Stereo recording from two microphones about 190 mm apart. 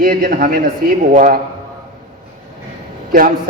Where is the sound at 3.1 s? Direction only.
50° right (ahead or behind).